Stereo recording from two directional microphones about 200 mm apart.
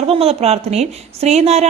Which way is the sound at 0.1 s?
30° right (ahead or behind).